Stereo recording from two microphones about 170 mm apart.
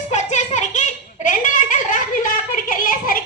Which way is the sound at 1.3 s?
50° left (ahead or behind).